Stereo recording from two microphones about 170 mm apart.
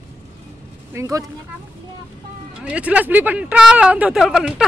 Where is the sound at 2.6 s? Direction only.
5° right (ahead or behind).